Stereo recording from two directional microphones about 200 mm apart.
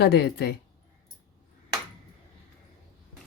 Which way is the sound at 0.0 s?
55° left (ahead or behind).